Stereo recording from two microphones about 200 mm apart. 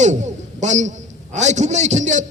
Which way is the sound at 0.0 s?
35° right (ahead or behind).